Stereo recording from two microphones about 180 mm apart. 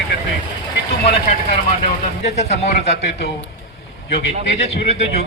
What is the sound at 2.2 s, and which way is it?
Speech, 40° left (ahead or behind).